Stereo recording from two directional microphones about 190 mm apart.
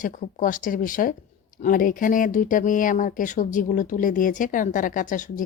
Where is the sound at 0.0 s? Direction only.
45° left (ahead or behind).